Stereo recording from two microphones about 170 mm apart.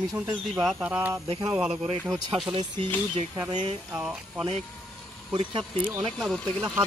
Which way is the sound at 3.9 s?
10° right (ahead or behind).